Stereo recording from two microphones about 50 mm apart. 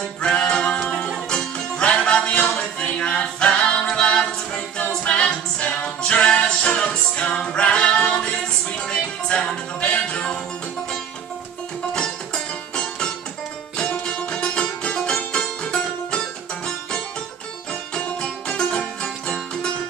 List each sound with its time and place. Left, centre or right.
0.2 s music: centre
2.3 s a capella: left
8.7 s music: centre
13.8 s music: centre
18.6 s music: centre